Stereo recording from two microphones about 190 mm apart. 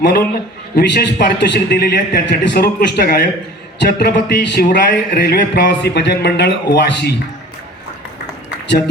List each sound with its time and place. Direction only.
0.0 s a man's voice: 55° left (ahead or behind)